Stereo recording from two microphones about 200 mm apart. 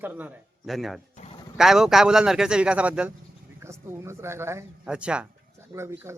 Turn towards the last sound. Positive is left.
turn(degrees=-15)  # may be behind; listen again after turning